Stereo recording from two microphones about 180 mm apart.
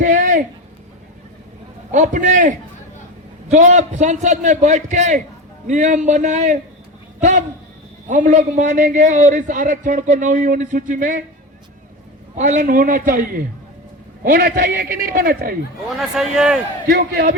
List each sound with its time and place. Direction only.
0.0 s a sound: 45° right (ahead or behind)
1.9 s a man's voice: 45° right (ahead or behind)
12.4 s a man's voice: 45° right (ahead or behind)
16.0 s a man's voice: 5° right (ahead or behind)
16.9 s a man's voice: 55° right (ahead or behind)